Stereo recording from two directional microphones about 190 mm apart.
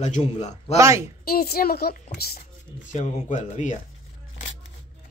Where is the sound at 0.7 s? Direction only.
15° right (ahead or behind).